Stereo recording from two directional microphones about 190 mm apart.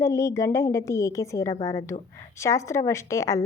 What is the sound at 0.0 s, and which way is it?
Speech, 15° left (ahead or behind).